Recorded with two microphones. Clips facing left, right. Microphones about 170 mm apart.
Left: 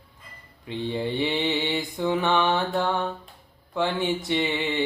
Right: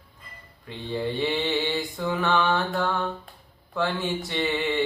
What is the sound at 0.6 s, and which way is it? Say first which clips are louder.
Mantra: left 1 dB; 20° left (ahead or behind).